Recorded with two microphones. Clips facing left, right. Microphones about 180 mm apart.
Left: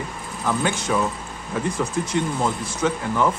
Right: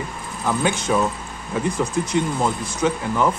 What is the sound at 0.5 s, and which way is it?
Speech, 15° right (ahead or behind).